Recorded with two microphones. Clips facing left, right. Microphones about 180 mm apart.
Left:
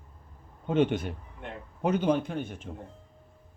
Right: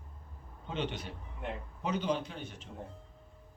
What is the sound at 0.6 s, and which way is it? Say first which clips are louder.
A man's voice: left 12 dB; 50° left (ahead or behind).